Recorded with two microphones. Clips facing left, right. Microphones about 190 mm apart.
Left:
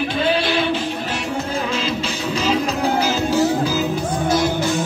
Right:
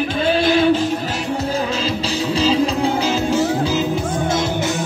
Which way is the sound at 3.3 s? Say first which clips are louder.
Even; 25° right (ahead or behind).